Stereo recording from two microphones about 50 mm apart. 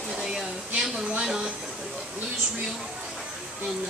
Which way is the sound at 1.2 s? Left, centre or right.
Centre.